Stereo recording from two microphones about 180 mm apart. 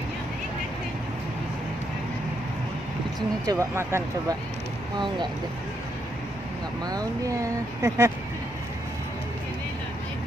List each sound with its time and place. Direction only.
3.2 s speech: 20° right (ahead or behind)
6.9 s speech: 20° right (ahead or behind)